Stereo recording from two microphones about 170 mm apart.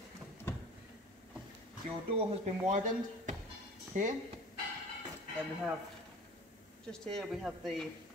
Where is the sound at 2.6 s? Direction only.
45° right (ahead or behind).